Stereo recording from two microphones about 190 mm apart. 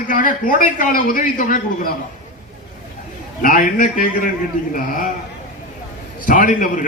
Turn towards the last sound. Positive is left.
turn(degrees=45)  # may be behind; listen again after turning